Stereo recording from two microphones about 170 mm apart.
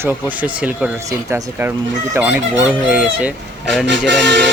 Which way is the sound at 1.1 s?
20° right (ahead or behind).